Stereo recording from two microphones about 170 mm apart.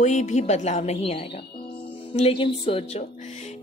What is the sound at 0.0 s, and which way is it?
A woman's voice, 45° left (ahead or behind).